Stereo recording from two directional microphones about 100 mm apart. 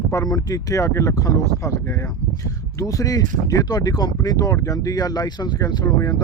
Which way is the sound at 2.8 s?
35° left (ahead or behind).